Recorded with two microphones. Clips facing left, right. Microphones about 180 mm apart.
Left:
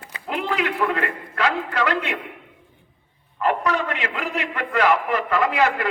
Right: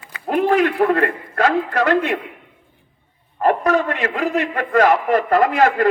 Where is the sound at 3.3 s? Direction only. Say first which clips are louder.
Right 5 dB; 45° right (ahead or behind).